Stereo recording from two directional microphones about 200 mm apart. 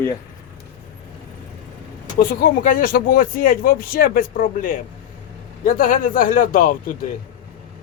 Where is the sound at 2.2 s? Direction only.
45° left (ahead or behind).